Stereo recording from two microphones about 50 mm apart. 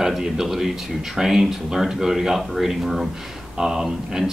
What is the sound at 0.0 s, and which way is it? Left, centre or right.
Speech, centre.